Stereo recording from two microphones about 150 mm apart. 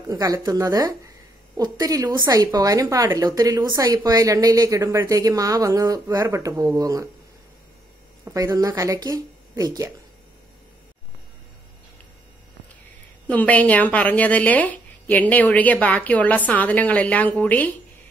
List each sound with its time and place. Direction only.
0.1 s a woman's voice: 25° right (ahead or behind)
8.3 s a woman's voice: 20° right (ahead or behind)
13.3 s a woman's voice: 10° left (ahead or behind)